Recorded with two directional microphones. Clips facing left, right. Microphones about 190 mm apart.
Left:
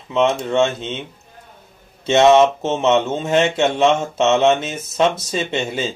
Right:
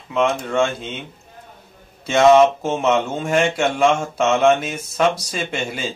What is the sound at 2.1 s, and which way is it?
Speech, 25° left (ahead or behind).